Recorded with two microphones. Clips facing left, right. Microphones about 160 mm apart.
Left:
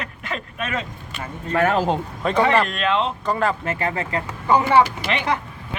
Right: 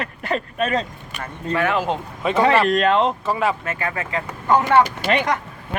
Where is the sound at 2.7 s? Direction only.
45° right (ahead or behind).